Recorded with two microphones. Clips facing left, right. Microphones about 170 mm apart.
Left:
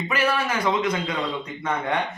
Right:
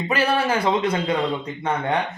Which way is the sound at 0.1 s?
30° right (ahead or behind).